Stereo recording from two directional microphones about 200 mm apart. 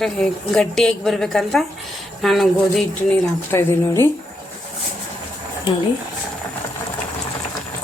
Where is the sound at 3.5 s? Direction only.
10° left (ahead or behind).